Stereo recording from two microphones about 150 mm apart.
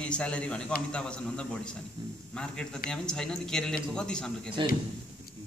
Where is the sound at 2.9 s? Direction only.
5° left (ahead or behind).